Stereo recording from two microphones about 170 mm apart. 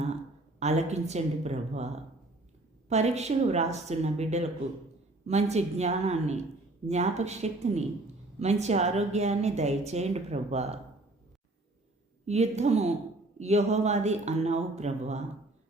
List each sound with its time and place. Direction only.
0.6 s a woman's voice: 40° right (ahead or behind)
2.9 s a woman's voice: 40° right (ahead or behind)
12.2 s a woman's voice: 40° right (ahead or behind)